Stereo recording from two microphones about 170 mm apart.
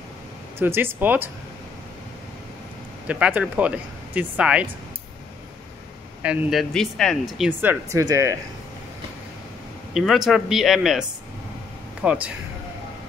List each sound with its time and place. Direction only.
0.6 s speech: 15° right (ahead or behind)
3.1 s speech: 10° right (ahead or behind)
6.2 s speech: 5° right (ahead or behind)
7.4 s speech: 15° right (ahead or behind)
9.9 s a man's voice: centre (ahead or behind)